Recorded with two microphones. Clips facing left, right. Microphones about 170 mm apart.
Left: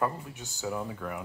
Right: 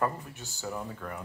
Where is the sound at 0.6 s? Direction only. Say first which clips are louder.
Left 3 dB; 5° left (ahead or behind).